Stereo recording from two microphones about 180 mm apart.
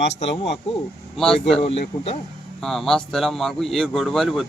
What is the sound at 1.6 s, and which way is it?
Speech, 35° left (ahead or behind).